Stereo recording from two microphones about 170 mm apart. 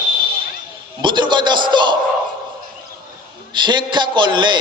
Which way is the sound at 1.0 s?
25° right (ahead or behind).